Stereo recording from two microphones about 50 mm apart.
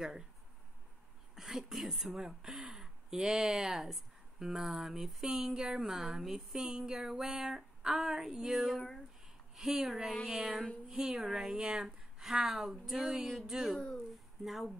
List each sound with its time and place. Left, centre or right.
1.3 s speech: centre
6.7 s a sound: centre
7.0 s speech: centre
8.7 s speech: centre
9.6 s speech: centre